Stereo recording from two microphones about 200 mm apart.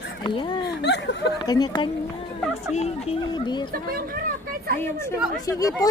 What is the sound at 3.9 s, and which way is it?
Vehicle, 45° right (ahead or behind).